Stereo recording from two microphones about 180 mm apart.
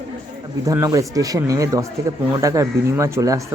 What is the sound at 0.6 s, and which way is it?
Speech, 15° right (ahead or behind).